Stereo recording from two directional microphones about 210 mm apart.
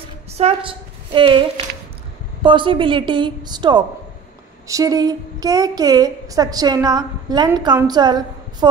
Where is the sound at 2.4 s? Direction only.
25° right (ahead or behind).